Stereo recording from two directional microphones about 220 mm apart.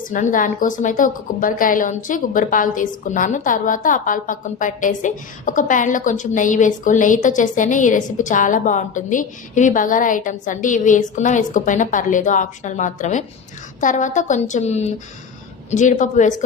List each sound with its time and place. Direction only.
0.0 s a woman's voice: 35° left (ahead or behind)